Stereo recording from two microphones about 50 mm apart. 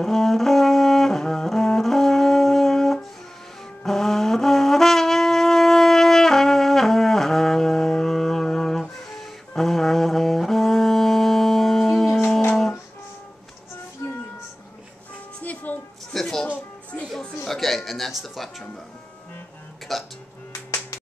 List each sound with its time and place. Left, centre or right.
0.0 s brass instrument: centre
15.4 s music: left
16.1 s music: centre
17.5 s music: centre
19.9 s music: centre